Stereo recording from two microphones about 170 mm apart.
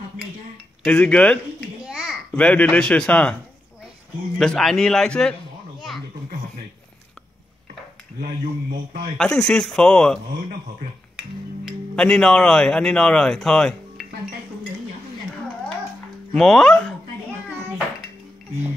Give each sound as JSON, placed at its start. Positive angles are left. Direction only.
{"t": 0.8, "sound": "speech", "side_deg": 5}
{"t": 1.9, "sound": "a sound", "side_deg": -5}
{"t": 2.3, "sound": "speech", "side_deg": 10}
{"t": 4.4, "sound": "speech", "side_deg": 0}
{"t": 5.8, "sound": "a sound", "side_deg": 0}
{"t": 8.2, "sound": "a man's voice", "side_deg": -60}
{"t": 9.2, "sound": "speech", "side_deg": 5}
{"t": 11.9, "sound": "speech", "side_deg": 5}
{"t": 16.3, "sound": "speech", "side_deg": 5}